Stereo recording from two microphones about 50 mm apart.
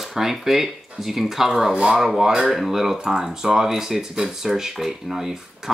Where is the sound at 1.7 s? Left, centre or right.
Right.